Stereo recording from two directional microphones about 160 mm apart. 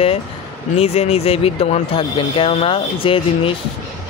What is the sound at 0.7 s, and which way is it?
Speech, 40° left (ahead or behind).